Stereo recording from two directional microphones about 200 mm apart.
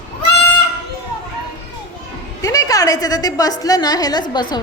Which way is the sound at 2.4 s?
15° left (ahead or behind).